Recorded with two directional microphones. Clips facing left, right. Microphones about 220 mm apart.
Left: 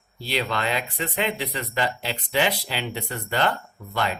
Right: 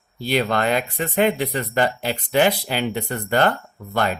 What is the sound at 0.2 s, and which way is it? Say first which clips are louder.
Speech: right 6 dB; 50° right (ahead or behind).